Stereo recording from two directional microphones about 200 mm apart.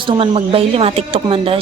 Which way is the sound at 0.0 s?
25° right (ahead or behind).